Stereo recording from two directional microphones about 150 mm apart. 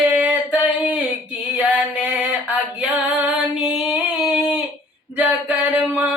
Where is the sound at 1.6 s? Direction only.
10° right (ahead or behind).